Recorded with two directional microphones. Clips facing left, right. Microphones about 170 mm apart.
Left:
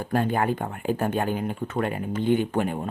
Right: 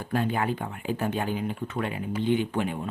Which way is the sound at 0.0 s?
50° left (ahead or behind).